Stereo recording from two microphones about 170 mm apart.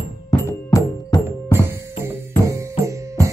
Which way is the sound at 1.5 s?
15° right (ahead or behind).